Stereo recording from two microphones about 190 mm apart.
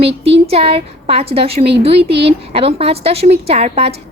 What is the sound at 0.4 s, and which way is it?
A woman's voice, 30° right (ahead or behind).